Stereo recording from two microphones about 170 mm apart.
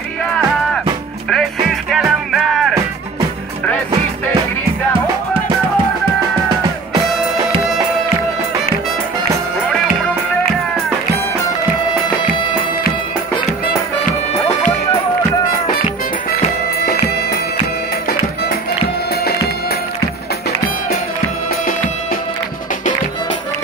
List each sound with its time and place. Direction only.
1.3 s music: centre (ahead or behind)
16.8 s music: 70° left (ahead or behind)